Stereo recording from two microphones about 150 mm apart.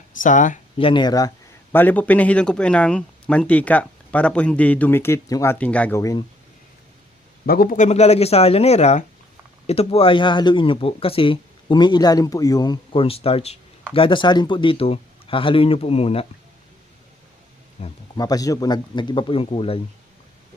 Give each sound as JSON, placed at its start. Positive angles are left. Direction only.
{"t": 0.1, "sound": "speech", "side_deg": 60}
{"t": 0.8, "sound": "speech", "side_deg": 35}
{"t": 1.7, "sound": "speech", "side_deg": 10}
{"t": 6.0, "sound": "speech", "side_deg": 20}
{"t": 7.4, "sound": "a man's voice", "side_deg": 80}
{"t": 7.9, "sound": "speech", "side_deg": 45}
{"t": 17.8, "sound": "speech", "side_deg": 40}
{"t": 18.2, "sound": "speech", "side_deg": 25}